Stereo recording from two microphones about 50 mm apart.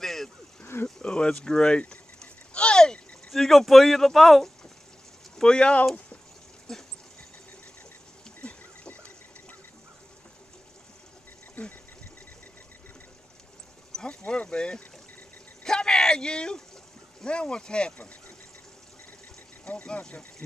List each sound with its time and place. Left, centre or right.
0.0 s a sound: centre
0.8 s sheep: centre
3.3 s speech: centre
5.4 s speech: centre
6.7 s dog: centre
8.4 s a sound: left
11.6 s speech: left
14.0 s speech: left
15.6 s a sound: centre
17.2 s speech: centre
19.6 s speech: left